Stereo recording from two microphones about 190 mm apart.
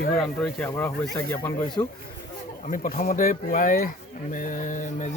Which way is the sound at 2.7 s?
45° left (ahead or behind).